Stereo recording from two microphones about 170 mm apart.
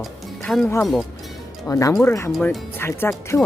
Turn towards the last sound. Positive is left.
turn(degrees=15)  # may be behind; listen again after turning